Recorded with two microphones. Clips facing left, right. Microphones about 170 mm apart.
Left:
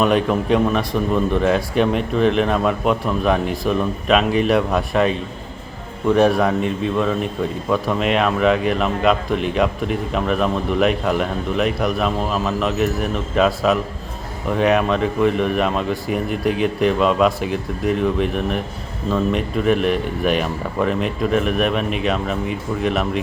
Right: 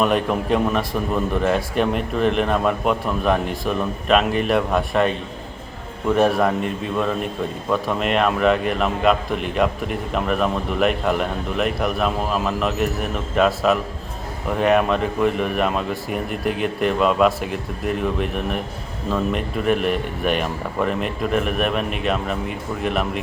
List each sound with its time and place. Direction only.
0.0 s a man's voice: centre (ahead or behind)